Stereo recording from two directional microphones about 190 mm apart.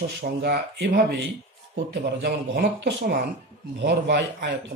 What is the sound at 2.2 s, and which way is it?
A woman's voice, 60° right (ahead or behind).